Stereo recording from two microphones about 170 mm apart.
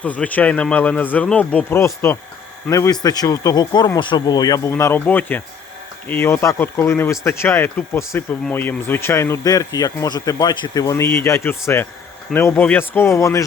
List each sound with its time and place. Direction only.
0.0 s speech: 10° left (ahead or behind)